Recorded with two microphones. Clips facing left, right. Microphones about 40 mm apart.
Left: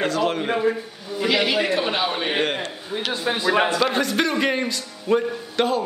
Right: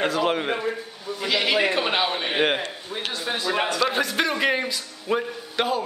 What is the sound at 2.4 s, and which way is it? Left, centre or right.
Speech, centre.